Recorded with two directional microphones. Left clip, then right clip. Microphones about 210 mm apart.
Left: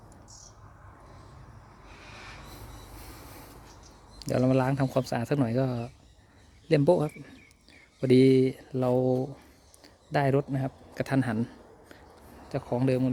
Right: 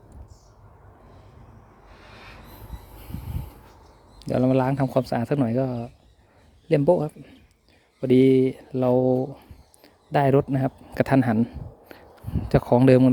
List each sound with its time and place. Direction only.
4.2 s a man's voice: 10° right (ahead or behind)
12.5 s speech: 35° right (ahead or behind)